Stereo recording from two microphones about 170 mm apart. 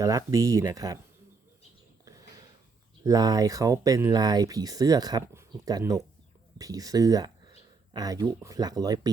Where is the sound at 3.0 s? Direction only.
20° right (ahead or behind).